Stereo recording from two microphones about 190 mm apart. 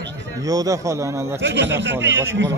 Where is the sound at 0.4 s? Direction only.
20° right (ahead or behind).